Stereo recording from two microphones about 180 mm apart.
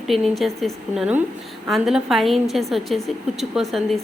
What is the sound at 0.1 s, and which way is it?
A woman's voice, centre (ahead or behind).